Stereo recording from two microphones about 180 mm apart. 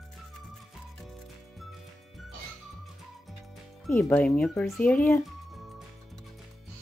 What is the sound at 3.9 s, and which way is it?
Speech, 10° left (ahead or behind).